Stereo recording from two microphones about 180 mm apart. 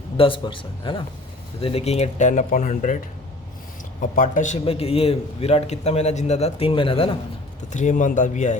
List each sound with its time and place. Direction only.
0.2 s a man's voice: 30° left (ahead or behind); by 3.0 s 45° left (ahead or behind)
4.0 s a man's voice: 50° left (ahead or behind); by 7.2 s 30° left (ahead or behind)
7.7 s a man's voice: 45° left (ahead or behind)